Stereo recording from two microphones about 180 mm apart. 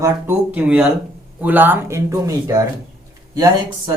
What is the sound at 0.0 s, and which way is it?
Speech, 10° right (ahead or behind).